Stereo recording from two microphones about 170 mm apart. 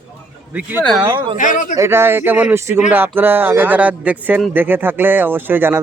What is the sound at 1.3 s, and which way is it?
Speech, 50° left (ahead or behind).